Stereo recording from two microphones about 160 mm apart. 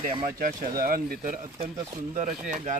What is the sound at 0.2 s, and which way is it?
Speech, 60° right (ahead or behind).